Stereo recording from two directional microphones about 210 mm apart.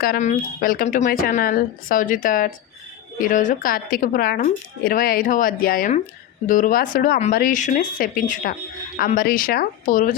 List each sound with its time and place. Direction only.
0.0 s speech: 40° left (ahead or behind)